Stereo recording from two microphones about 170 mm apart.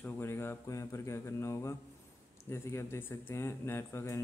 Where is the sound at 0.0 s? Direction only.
15° left (ahead or behind).